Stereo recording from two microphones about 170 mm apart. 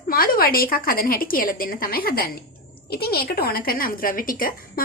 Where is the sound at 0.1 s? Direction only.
60° left (ahead or behind).